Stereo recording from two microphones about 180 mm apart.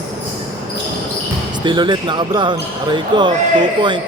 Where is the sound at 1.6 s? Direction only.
25° right (ahead or behind).